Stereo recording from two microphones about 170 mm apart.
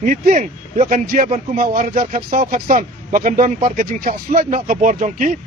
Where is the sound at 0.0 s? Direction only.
50° right (ahead or behind).